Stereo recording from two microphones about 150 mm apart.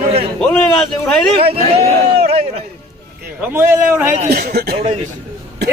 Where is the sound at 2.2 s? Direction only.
45° right (ahead or behind).